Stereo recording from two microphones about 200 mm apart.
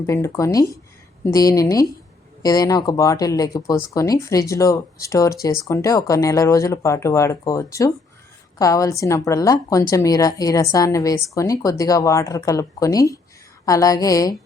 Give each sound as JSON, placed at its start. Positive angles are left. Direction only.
{"t": 0.0, "sound": "a woman's voice", "side_deg": 15}